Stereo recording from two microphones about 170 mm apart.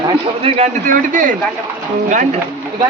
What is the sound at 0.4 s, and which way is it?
Speech, 40° right (ahead or behind).